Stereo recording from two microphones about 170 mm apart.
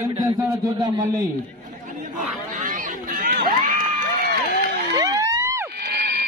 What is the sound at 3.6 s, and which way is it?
Crowd, 55° right (ahead or behind).